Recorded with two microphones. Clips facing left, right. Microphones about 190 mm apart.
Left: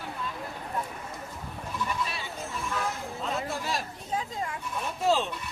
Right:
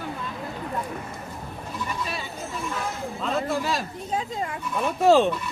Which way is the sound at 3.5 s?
90° right.